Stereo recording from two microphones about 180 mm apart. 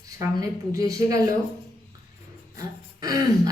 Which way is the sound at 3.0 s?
20° right (ahead or behind).